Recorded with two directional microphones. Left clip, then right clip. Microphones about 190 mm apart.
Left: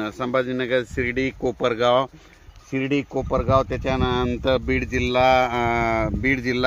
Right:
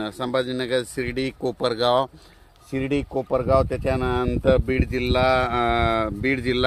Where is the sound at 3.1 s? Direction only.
40° left (ahead or behind).